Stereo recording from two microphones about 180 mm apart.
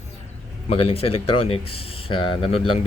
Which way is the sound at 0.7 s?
30° left (ahead or behind).